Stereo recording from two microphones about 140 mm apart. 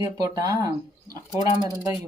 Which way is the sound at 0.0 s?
25° right (ahead or behind).